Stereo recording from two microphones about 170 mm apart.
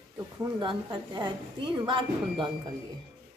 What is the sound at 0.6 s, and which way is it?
A woman's voice, 25° right (ahead or behind).